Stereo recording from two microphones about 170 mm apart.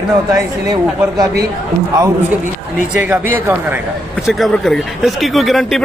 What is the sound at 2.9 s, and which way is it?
Speech, 10° right (ahead or behind).